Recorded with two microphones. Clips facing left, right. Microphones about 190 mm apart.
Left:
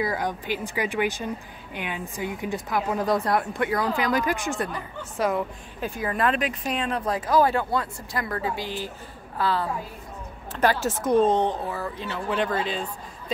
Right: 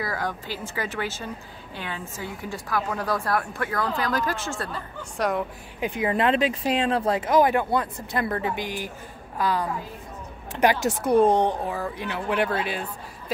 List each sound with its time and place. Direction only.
0.0 s speech: 20° left (ahead or behind)
5.1 s speech: centre (ahead or behind)
5.8 s a woman's voice: 20° right (ahead or behind)